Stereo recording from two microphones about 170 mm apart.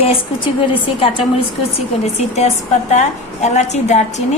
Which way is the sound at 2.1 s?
40° left (ahead or behind).